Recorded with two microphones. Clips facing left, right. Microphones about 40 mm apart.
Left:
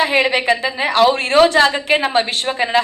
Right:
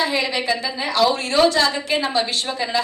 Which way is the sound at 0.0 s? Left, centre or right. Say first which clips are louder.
Left 6 dB; left.